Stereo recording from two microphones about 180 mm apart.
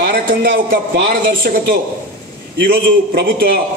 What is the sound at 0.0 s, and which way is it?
A man's voice, 60° right (ahead or behind).